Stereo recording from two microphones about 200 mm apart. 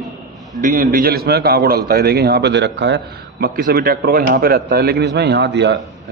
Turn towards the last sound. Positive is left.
turn(degrees=-60)  # may be behind; listen again after turning